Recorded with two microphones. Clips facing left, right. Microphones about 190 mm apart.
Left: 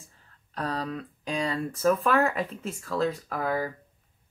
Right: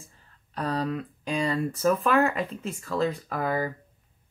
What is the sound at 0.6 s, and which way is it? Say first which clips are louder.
Speech: right 3 dB; centre (ahead or behind).